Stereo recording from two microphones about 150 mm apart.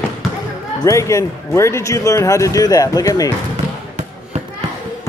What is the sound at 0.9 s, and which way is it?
A man's voice, 20° left (ahead or behind).